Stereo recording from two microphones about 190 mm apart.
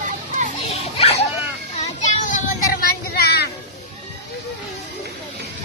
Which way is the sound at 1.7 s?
40° left (ahead or behind).